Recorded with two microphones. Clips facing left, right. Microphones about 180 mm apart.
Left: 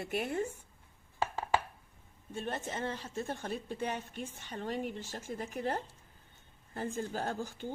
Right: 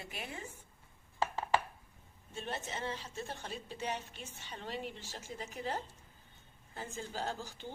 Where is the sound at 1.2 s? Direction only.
10° left (ahead or behind).